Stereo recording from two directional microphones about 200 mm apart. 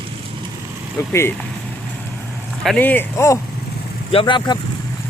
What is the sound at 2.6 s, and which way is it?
Speech, 5° left (ahead or behind).